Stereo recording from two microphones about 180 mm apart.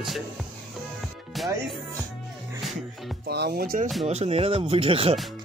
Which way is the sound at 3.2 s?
65° right (ahead or behind).